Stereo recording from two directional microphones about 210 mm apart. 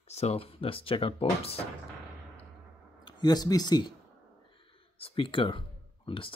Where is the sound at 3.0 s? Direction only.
20° left (ahead or behind).